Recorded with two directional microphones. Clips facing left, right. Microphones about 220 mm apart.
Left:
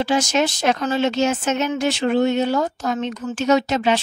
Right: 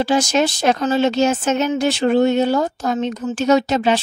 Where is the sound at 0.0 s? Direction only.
35° right (ahead or behind).